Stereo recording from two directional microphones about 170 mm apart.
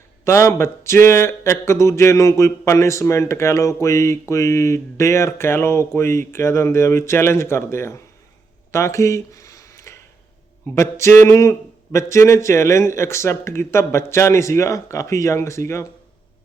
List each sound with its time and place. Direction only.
0.3 s speech: 15° left (ahead or behind)
8.7 s a sound: 15° left (ahead or behind)
10.8 s speech: 15° left (ahead or behind)